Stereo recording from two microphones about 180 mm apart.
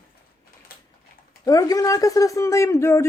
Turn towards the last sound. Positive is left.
turn(degrees=15)  # may be behind; listen again after turning